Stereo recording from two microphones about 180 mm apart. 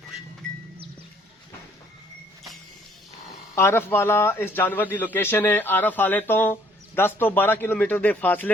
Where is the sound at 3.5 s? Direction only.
15° left (ahead or behind).